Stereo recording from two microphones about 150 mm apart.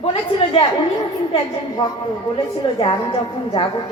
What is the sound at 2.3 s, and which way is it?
A woman's voice, 40° left (ahead or behind).